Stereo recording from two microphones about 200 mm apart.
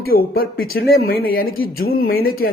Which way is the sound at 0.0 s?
50° left (ahead or behind).